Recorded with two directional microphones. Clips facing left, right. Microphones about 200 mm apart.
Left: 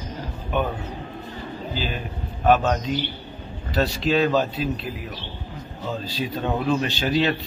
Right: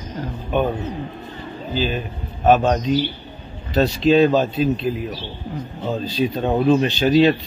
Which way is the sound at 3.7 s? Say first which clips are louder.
Right 6 dB; 20° right (ahead or behind).